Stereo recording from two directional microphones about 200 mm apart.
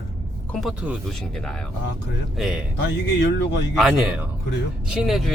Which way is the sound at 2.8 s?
60° left (ahead or behind).